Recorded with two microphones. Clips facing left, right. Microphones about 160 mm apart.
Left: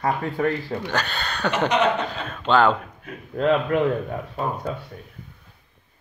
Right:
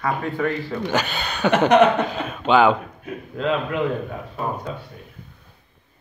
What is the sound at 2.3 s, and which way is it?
Speech, 10° right (ahead or behind).